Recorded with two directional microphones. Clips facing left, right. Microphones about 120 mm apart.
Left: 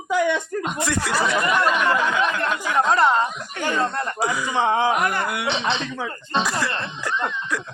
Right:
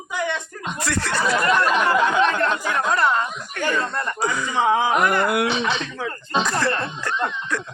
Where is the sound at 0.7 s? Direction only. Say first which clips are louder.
Right 2 dB; 15° left (ahead or behind).